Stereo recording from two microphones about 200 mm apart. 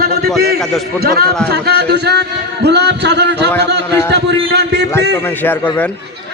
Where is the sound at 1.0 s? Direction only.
50° right (ahead or behind).